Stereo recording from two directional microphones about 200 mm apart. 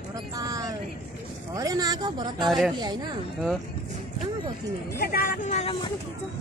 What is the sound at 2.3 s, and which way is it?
Speech, centre (ahead or behind).